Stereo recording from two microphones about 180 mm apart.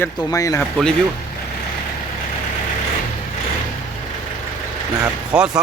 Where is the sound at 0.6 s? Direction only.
5° left (ahead or behind).